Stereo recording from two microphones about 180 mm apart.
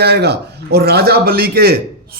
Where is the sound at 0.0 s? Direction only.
65° right (ahead or behind).